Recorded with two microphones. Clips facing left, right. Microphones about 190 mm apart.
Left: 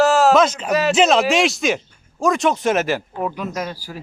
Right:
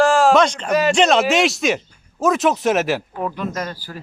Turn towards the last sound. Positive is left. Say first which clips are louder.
# even
turn(degrees=10)  # may be behind; listen again after turning